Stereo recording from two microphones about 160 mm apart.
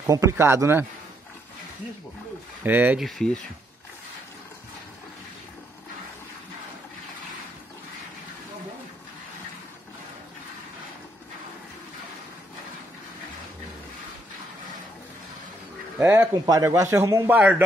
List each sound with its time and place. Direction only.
0.1 s a man's voice: 20° right (ahead or behind)
2.6 s a man's voice: 10° right (ahead or behind)
3.1 s speech: 5° left (ahead or behind)
16.0 s a man's voice: 15° right (ahead or behind)